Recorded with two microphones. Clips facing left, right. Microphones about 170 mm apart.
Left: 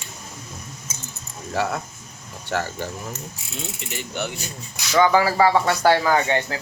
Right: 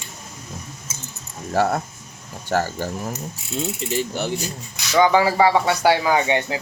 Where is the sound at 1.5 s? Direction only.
45° right (ahead or behind).